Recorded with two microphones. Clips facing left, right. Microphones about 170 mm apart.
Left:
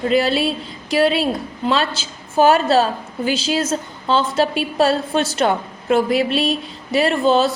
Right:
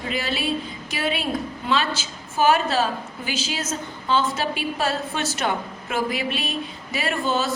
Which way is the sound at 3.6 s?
30° left (ahead or behind).